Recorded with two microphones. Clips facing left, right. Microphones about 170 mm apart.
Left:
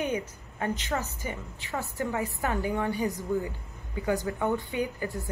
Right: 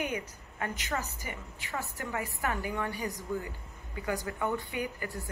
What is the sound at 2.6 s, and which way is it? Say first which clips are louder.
Speech: left 6 dB; 20° left (ahead or behind).